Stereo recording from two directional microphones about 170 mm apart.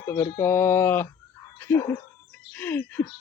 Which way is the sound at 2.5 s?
10° left (ahead or behind).